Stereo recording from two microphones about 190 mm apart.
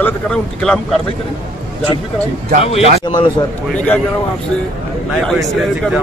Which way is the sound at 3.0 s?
25° left (ahead or behind).